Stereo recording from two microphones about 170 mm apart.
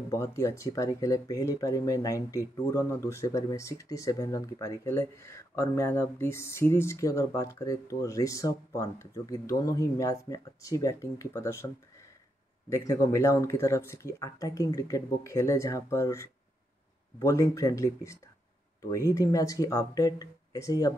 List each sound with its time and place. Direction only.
0.1 s speech: 15° left (ahead or behind)